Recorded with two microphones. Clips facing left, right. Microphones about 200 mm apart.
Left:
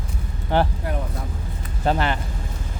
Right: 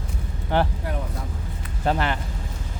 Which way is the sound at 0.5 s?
30° left (ahead or behind).